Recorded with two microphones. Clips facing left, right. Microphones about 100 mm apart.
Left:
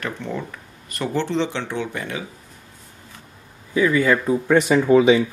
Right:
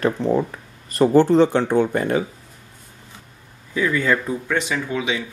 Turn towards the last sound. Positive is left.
turn(degrees=40)  # may be behind; listen again after turning